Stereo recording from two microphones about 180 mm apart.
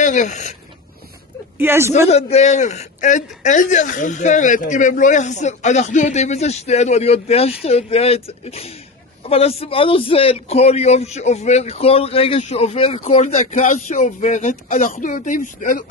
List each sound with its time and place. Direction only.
0.0 s a man's voice: 40° left (ahead or behind)
1.6 s speech: 15° right (ahead or behind)
2.0 s a man's voice: 35° left (ahead or behind)